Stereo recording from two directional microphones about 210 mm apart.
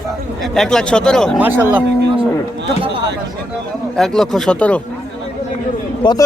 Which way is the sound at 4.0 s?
Centre (ahead or behind).